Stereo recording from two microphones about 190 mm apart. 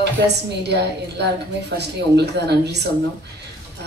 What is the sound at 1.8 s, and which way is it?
A woman's voice, 60° right (ahead or behind).